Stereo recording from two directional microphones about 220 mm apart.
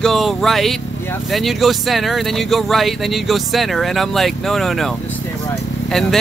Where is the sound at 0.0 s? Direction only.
Centre (ahead or behind).